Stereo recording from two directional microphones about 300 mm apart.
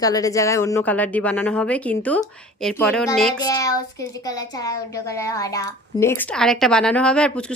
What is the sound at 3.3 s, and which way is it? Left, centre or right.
A woman's voice, centre.